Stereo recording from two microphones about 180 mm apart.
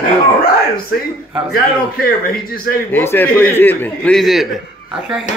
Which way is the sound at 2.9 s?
10° left (ahead or behind).